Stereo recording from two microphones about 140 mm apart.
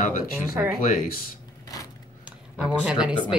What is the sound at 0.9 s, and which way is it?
Speech, 90° left.